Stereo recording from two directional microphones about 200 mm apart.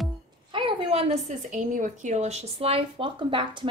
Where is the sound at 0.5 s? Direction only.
25° right (ahead or behind).